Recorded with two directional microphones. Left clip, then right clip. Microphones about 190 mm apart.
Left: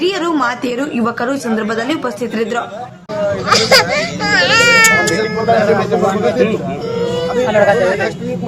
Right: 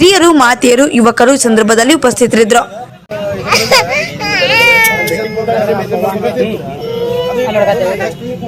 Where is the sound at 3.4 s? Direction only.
55° left (ahead or behind).